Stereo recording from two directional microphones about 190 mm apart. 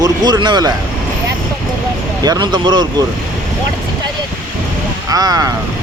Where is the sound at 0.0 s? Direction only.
25° right (ahead or behind).